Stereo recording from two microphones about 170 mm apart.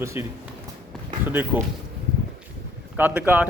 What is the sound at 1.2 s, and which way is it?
Speech, 10° right (ahead or behind).